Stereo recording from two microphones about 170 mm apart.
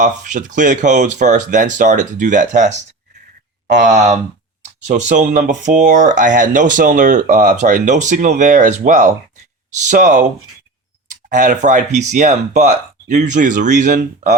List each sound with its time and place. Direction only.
0.0 s speech: 45° right (ahead or behind)
3.8 s speech: 45° right (ahead or behind)